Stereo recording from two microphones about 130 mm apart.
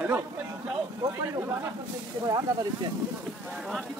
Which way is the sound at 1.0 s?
35° right (ahead or behind).